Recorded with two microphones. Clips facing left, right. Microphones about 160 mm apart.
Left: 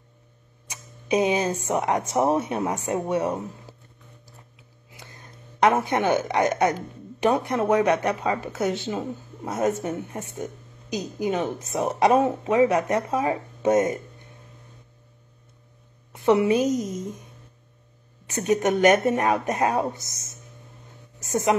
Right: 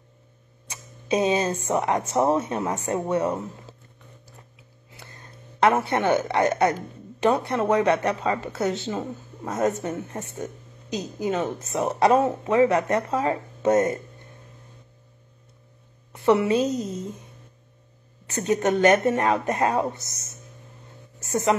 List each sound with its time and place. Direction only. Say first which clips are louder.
0.7 s speech: even; 15° left (ahead or behind)
4.9 s a sound: even; 15° left (ahead or behind)
7.2 s a woman's voice: even; 15° left (ahead or behind)
16.1 s a woman's voice: left 1 dB; 20° left (ahead or behind)
21.2 s a woman's voice: even; 15° left (ahead or behind)